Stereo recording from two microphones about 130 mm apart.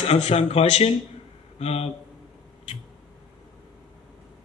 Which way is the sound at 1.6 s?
50° left (ahead or behind).